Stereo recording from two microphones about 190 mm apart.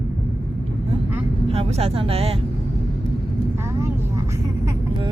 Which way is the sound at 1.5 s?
30° right (ahead or behind).